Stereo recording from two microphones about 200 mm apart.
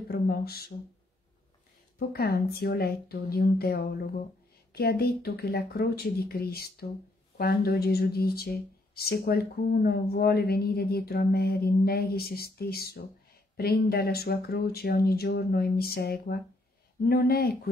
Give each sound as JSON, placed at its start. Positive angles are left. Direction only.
{"t": 0.1, "sound": "speech", "side_deg": 50}
{"t": 2.0, "sound": "speech", "side_deg": 50}